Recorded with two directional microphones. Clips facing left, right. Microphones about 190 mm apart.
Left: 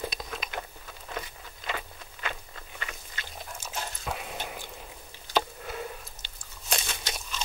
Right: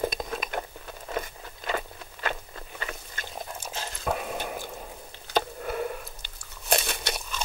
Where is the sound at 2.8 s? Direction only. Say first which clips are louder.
Right 4 dB; 45° right (ahead or behind).